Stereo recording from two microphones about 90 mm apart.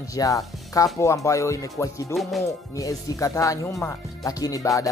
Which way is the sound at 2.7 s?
40° left (ahead or behind).